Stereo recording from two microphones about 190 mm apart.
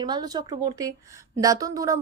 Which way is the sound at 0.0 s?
20° right (ahead or behind).